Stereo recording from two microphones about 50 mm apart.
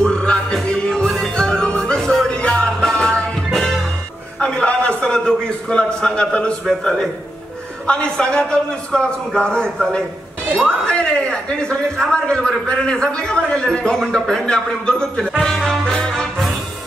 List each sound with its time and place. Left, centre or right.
0.0 s music: centre
3.5 s music: centre
4.4 s a sound: centre
6.8 s a man's voice: centre
15.6 s music: centre